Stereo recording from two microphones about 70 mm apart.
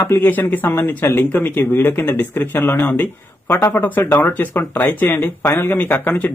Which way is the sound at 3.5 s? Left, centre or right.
Left.